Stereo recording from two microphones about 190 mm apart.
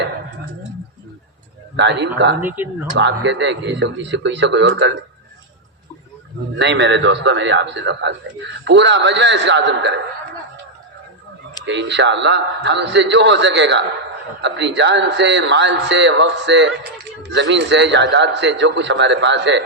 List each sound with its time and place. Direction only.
1.7 s a man's voice: 65° right (ahead or behind)
2.4 s speech: 10° right (ahead or behind)
3.0 s a man's voice: 70° right (ahead or behind)
6.6 s a man's voice: 65° right (ahead or behind)
11.6 s a man's voice: 70° right (ahead or behind)